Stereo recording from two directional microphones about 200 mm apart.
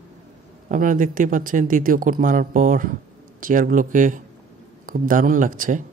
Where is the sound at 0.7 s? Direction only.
40° right (ahead or behind).